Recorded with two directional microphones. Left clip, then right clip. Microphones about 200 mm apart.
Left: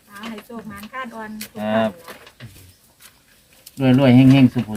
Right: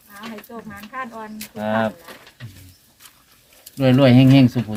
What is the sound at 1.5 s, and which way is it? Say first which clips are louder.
Speech: left 1 dB; 30° right (ahead or behind).